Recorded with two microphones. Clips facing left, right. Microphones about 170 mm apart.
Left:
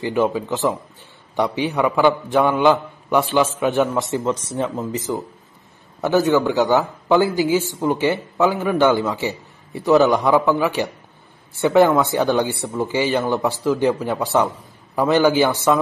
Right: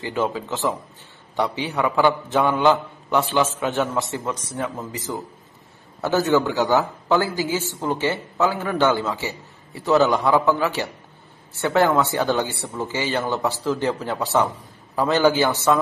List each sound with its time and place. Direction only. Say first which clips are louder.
0.0 s a woman's voice: left 5 dB; 15° left (ahead or behind)